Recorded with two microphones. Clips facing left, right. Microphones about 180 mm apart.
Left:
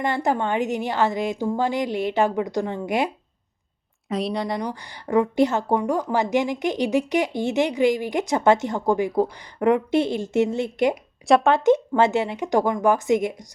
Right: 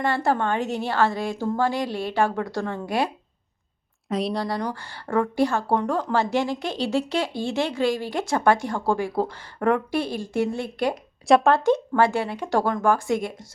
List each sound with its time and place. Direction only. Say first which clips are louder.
0.0 s speech: even; 20° left (ahead or behind)
4.1 s speech: even; centre (ahead or behind)
4.4 s a woman's voice: left 1 dB; 20° left (ahead or behind)
11.3 s speech: even; centre (ahead or behind)
11.5 s speech: left 2 dB; 20° left (ahead or behind)